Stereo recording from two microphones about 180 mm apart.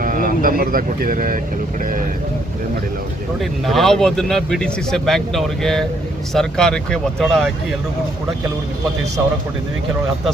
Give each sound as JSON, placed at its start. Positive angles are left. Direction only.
{"t": 0.0, "sound": "speech", "side_deg": -50}
{"t": 3.4, "sound": "speech", "side_deg": 0}